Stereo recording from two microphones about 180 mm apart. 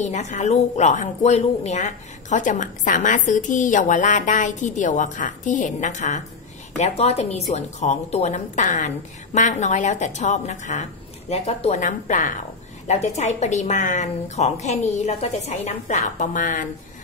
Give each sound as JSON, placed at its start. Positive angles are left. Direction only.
{"t": 0.0, "sound": "speech", "side_deg": 40}